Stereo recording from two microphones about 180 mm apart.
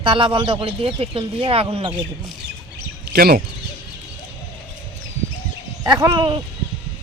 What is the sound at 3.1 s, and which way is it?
Speech, 60° right (ahead or behind).